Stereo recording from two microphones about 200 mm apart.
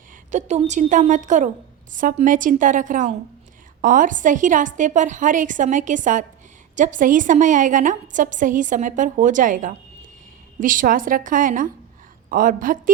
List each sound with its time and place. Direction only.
0.3 s a woman's voice: 35° right (ahead or behind)